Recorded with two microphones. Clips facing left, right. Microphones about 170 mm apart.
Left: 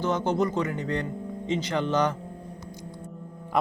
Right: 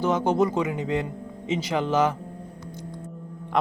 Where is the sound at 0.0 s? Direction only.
10° right (ahead or behind).